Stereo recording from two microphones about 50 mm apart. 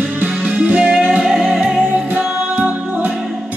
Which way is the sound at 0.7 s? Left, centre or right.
Right.